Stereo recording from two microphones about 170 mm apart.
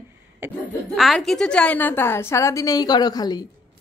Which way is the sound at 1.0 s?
Centre (ahead or behind).